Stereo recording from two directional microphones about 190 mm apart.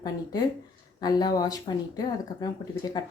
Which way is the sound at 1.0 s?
20° left (ahead or behind).